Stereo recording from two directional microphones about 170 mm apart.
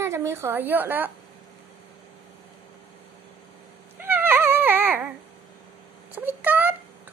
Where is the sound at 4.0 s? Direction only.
10° right (ahead or behind).